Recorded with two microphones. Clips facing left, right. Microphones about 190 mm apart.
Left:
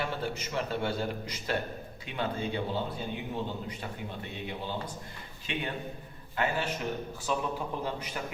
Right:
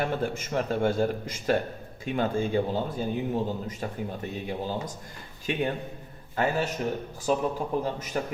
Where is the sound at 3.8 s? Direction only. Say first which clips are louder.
Right 6 dB; 40° right (ahead or behind).